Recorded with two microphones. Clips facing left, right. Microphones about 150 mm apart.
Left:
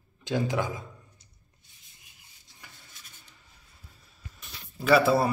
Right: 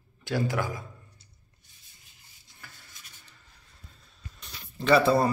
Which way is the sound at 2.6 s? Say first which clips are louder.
Right 1 dB; 15° left (ahead or behind).